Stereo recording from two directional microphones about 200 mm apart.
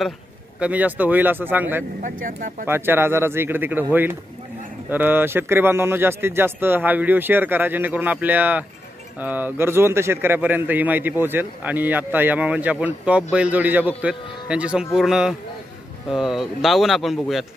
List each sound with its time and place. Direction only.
0.6 s a man's voice: 10° right (ahead or behind)
2.0 s speech: 40° right (ahead or behind)
2.6 s a man's voice: 10° right (ahead or behind)